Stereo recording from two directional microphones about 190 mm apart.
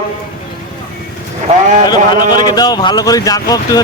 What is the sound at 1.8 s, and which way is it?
Speech, 20° left (ahead or behind).